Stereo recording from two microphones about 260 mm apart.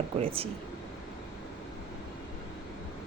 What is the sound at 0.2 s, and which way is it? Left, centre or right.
Speech, right.